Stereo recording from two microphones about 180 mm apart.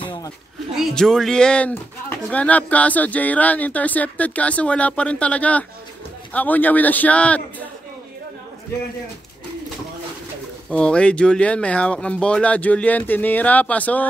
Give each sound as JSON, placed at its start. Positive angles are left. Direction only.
{"t": 0.0, "sound": "a sound", "side_deg": 25}
{"t": 0.7, "sound": "speech", "side_deg": 0}
{"t": 10.7, "sound": "speech", "side_deg": 5}